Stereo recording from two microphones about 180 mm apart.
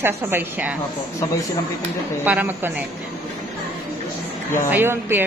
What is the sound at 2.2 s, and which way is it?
Speech, 10° right (ahead or behind).